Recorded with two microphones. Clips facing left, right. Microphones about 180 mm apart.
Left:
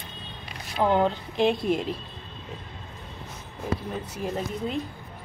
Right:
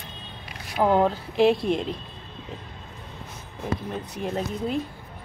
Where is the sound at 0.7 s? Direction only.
5° right (ahead or behind).